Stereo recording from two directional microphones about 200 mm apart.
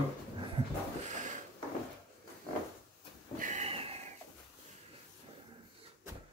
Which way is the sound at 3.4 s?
35° right (ahead or behind).